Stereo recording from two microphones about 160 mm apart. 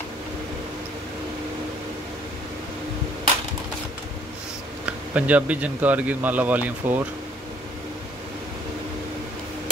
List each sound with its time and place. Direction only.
4.8 s speech: 10° right (ahead or behind)